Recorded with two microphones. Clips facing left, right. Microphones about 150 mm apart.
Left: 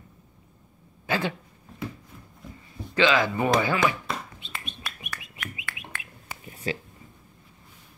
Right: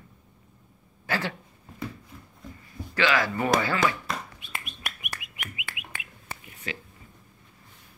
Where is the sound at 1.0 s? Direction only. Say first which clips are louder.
Left 3 dB; 20° left (ahead or behind).